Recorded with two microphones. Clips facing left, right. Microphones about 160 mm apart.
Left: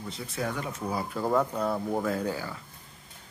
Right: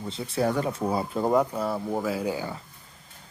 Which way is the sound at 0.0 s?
30° right (ahead or behind).